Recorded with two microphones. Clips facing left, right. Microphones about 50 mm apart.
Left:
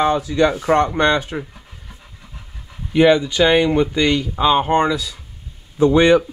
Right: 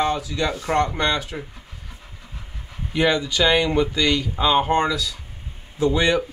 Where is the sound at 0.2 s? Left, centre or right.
Left.